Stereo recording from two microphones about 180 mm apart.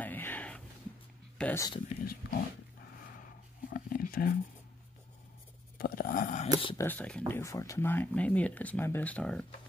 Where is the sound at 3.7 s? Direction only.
50° left (ahead or behind).